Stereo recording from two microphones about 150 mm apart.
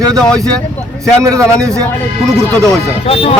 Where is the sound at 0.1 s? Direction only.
5° left (ahead or behind).